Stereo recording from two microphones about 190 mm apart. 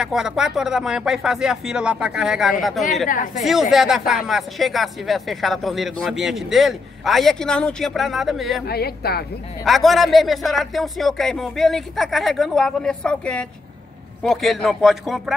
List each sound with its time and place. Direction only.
0.0 s speech: centre (ahead or behind)
3.1 s a woman's voice: 45° left (ahead or behind)
3.7 s speech: centre (ahead or behind)
8.6 s speech: 55° left (ahead or behind)
9.7 s speech: centre (ahead or behind)